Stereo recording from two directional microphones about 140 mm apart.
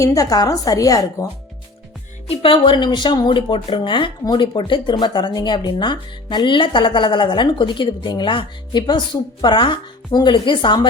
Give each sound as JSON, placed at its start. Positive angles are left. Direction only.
{"t": 0.0, "sound": "a woman's voice", "side_deg": 25}
{"t": 2.3, "sound": "speech", "side_deg": 40}